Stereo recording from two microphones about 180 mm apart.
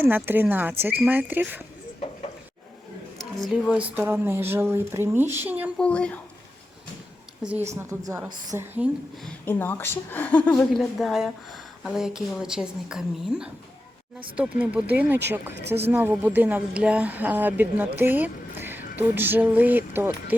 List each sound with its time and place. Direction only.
0.0 s speech: 10° right (ahead or behind)
3.3 s speech: centre (ahead or behind)
5.7 s a woman's voice: 5° left (ahead or behind)
7.7 s speech: 15° right (ahead or behind)
9.2 s a woman's voice: 10° left (ahead or behind); by 20.3 s 10° right (ahead or behind)